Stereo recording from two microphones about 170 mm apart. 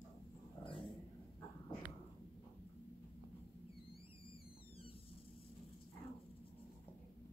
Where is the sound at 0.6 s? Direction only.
30° left (ahead or behind).